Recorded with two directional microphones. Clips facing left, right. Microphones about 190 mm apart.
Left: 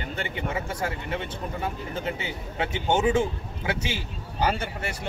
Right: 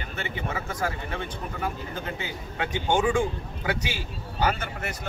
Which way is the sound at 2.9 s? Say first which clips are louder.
Left 1 dB; 25° left (ahead or behind).